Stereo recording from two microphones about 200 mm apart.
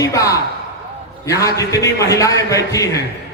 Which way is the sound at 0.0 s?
15° left (ahead or behind).